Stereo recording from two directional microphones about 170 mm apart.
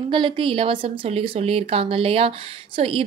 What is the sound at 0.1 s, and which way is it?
A woman's voice, 30° right (ahead or behind).